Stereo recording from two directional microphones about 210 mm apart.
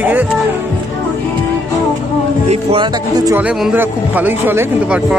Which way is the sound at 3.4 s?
5° right (ahead or behind).